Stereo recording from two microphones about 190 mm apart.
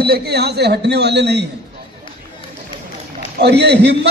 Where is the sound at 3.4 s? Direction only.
60° right (ahead or behind).